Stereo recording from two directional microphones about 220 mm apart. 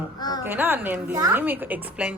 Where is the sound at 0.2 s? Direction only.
20° left (ahead or behind).